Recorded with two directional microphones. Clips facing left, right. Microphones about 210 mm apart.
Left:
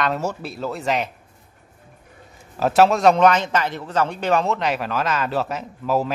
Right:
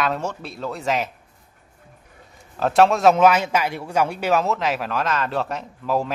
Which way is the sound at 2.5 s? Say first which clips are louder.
Left 1 dB; 5° left (ahead or behind).